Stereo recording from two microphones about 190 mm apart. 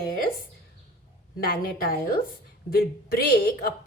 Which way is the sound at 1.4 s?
50° left (ahead or behind).